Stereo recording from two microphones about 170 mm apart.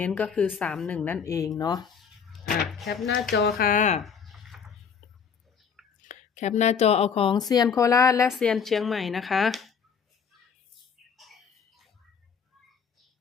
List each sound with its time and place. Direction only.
0.0 s a woman's voice: 10° left (ahead or behind)
2.0 s a sound: centre (ahead or behind)
2.6 s speech: centre (ahead or behind)
3.2 s speech: 70° left (ahead or behind)
3.7 s speech: 45° left (ahead or behind)
4.0 s a sound: centre (ahead or behind)
6.0 s a woman's voice: 45° left (ahead or behind); by 8.3 s 20° left (ahead or behind)
8.3 s speech: centre (ahead or behind)
11.2 s a sound: centre (ahead or behind)